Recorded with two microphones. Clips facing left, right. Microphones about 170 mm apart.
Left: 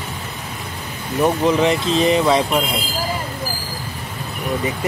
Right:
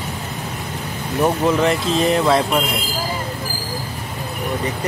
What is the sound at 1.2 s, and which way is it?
Speech, centre (ahead or behind).